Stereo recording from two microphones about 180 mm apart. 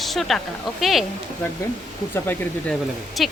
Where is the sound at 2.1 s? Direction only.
10° left (ahead or behind).